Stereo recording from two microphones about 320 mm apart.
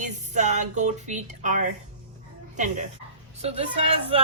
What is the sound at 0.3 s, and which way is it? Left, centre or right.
Speech, right.